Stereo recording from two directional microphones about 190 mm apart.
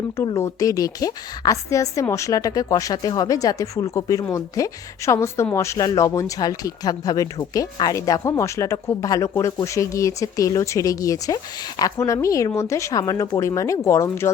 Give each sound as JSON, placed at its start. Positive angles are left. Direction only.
{"t": 0.3, "sound": "a woman's voice", "side_deg": 15}